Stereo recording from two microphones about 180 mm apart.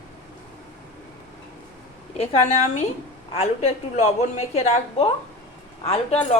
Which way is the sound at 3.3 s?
35° left (ahead or behind).